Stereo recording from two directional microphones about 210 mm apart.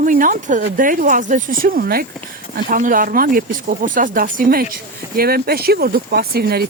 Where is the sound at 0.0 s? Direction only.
40° right (ahead or behind).